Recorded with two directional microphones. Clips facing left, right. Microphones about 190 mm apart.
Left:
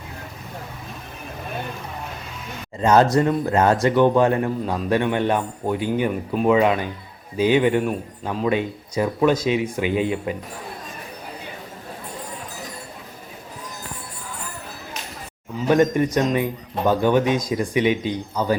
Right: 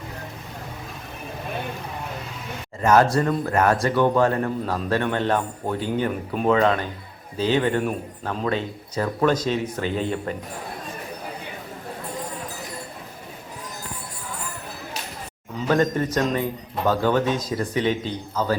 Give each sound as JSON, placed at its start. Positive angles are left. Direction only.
{"t": 2.8, "sound": "a man's voice", "side_deg": 20}
{"t": 15.6, "sound": "a man's voice", "side_deg": 15}